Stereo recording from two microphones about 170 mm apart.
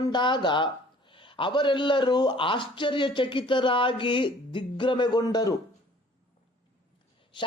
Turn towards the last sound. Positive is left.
turn(degrees=30)  # may be behind; listen again after turning